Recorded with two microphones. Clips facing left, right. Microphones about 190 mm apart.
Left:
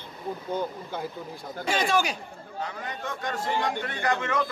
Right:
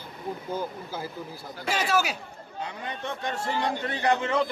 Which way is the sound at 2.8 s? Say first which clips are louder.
Right 1 dB; 25° right (ahead or behind).